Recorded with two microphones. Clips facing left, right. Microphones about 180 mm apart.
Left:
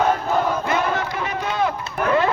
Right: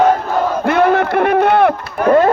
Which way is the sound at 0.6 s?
60° right (ahead or behind).